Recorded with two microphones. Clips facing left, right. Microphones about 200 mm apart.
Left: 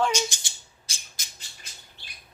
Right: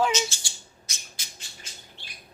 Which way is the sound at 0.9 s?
30° left (ahead or behind).